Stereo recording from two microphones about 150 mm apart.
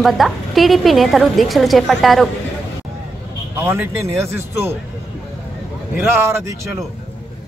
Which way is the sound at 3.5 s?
15° right (ahead or behind).